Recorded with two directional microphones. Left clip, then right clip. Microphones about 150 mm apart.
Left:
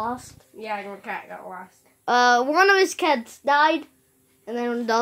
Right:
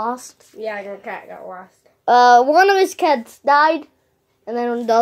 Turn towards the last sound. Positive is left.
turn(degrees=0)  # may be behind; listen again after turning